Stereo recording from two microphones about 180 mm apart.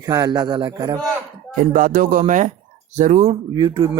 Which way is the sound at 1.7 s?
50° right (ahead or behind).